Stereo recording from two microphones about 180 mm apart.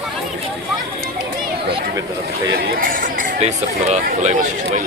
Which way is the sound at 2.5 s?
60° right (ahead or behind).